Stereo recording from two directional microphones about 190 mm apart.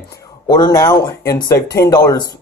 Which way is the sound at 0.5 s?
20° left (ahead or behind).